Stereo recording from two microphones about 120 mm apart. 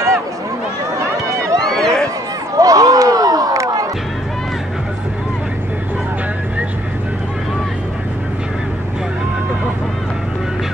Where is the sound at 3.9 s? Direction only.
Centre (ahead or behind).